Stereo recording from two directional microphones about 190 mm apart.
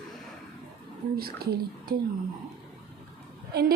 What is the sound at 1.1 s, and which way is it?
Speech, 55° right (ahead or behind).